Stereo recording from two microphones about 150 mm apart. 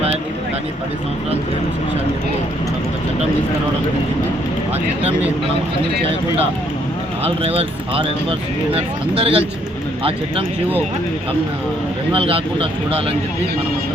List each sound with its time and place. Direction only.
7.3 s speech: 40° right (ahead or behind)
12.1 s speech: 35° right (ahead or behind)